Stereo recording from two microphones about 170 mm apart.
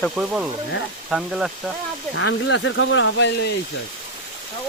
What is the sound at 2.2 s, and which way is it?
Speech, 90° left.